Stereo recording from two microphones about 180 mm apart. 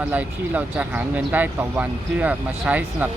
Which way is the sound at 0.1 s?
10° right (ahead or behind).